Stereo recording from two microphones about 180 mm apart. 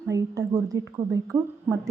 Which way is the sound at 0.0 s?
20° right (ahead or behind).